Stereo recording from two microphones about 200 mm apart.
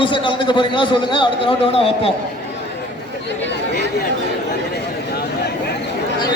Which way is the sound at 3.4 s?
55° left (ahead or behind).